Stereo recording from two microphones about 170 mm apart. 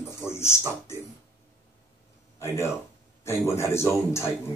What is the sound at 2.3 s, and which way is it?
Speech, 15° left (ahead or behind).